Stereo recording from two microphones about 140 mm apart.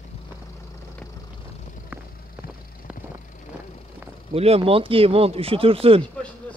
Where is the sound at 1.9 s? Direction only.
10° right (ahead or behind).